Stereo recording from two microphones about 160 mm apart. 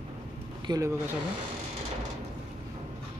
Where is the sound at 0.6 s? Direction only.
25° right (ahead or behind).